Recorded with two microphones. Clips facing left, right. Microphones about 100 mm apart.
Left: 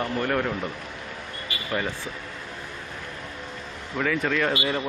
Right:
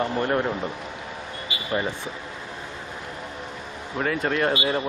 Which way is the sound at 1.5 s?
20° right (ahead or behind).